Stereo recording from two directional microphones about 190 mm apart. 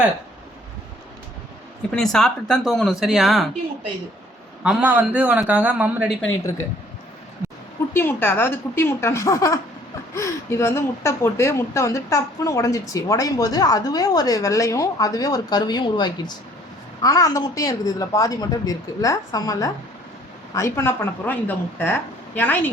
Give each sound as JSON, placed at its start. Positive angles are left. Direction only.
{"t": 1.9, "sound": "speech", "side_deg": 5}
{"t": 4.6, "sound": "a man's voice", "side_deg": -5}
{"t": 7.9, "sound": "speech", "side_deg": 10}